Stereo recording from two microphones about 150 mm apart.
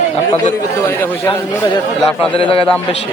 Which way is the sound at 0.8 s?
15° left (ahead or behind).